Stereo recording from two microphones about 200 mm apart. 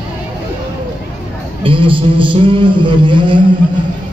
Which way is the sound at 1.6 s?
25° right (ahead or behind).